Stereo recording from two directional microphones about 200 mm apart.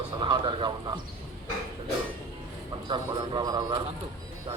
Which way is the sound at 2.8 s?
25° right (ahead or behind).